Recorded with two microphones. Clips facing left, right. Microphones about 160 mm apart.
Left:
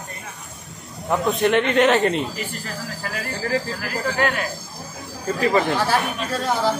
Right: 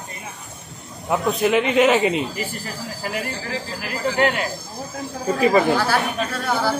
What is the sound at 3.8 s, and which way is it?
Speech, 25° right (ahead or behind).